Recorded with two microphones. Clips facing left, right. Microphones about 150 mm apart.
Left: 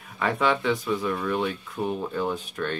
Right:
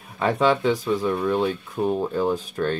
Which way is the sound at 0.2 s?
30° right (ahead or behind).